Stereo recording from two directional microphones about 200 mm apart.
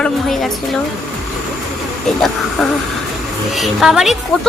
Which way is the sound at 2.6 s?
Centre (ahead or behind).